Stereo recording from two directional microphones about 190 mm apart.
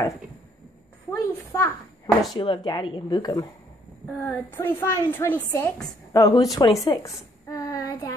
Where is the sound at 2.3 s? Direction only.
25° left (ahead or behind).